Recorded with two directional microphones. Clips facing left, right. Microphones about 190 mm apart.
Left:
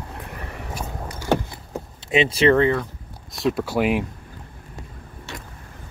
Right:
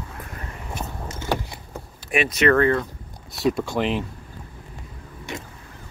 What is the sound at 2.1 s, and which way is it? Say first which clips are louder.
Speech: left 2 dB; 25° left (ahead or behind).